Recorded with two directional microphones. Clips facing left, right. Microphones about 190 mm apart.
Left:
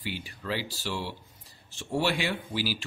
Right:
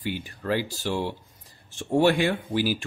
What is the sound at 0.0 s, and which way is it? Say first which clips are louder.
Speech: right 6 dB; 50° right (ahead or behind).